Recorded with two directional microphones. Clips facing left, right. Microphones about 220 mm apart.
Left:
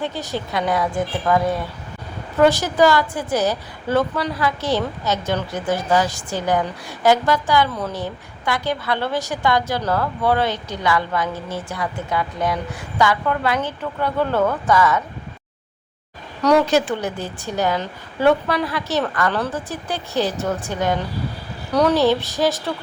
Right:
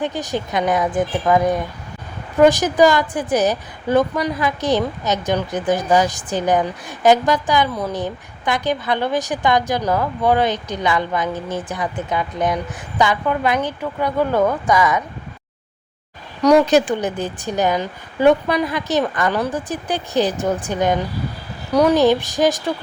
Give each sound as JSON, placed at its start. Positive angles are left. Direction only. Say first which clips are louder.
{"t": 0.0, "sound": "a woman's voice", "louder": "right 3 dB", "side_deg": -15}
{"t": 16.4, "sound": "a woman's voice", "louder": "right 3 dB", "side_deg": -15}